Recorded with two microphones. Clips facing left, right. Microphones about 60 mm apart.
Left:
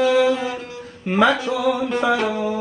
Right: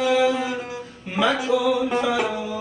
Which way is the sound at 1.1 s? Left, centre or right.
Left.